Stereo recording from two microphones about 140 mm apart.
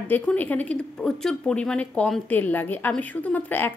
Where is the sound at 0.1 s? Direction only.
10° left (ahead or behind).